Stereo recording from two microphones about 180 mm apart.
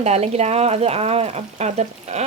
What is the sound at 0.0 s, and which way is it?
Speech, 35° right (ahead or behind).